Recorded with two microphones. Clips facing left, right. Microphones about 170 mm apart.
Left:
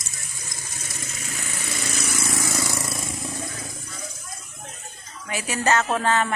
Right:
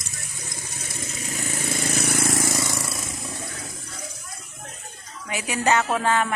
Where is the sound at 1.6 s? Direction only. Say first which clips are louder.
Right 5 dB; 50° right (ahead or behind).